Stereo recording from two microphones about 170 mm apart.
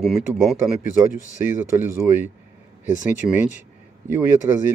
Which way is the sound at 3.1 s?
45° left (ahead or behind).